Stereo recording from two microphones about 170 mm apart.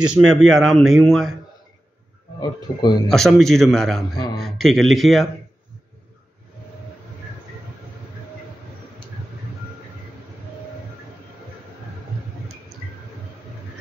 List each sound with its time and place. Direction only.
0.0 s a man's voice: 5° right (ahead or behind)
2.4 s speech: 25° left (ahead or behind)
3.1 s a man's voice: centre (ahead or behind)